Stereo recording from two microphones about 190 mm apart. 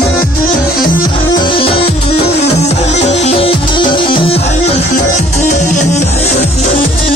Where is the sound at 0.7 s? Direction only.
50° left (ahead or behind).